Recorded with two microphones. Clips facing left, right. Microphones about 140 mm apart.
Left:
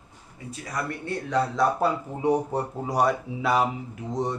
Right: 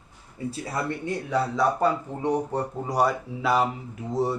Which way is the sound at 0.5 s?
30° right (ahead or behind).